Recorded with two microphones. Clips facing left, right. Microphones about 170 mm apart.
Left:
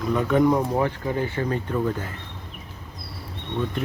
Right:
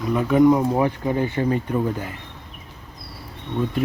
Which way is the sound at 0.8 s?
15° right (ahead or behind).